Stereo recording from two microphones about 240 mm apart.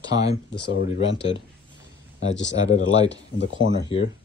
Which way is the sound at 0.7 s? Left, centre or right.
Left.